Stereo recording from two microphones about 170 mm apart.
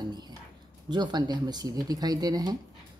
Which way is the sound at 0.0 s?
25° right (ahead or behind).